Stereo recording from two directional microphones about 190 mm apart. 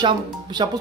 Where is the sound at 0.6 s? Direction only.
25° right (ahead or behind).